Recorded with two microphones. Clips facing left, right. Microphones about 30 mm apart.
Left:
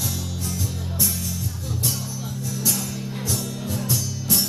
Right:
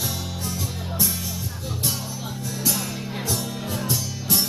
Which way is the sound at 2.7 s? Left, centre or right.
Centre.